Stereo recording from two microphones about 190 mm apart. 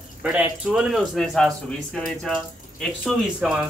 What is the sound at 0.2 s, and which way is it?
Speech, 5° right (ahead or behind).